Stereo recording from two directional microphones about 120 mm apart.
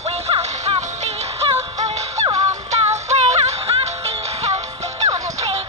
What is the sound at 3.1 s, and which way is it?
Music, 65° right (ahead or behind).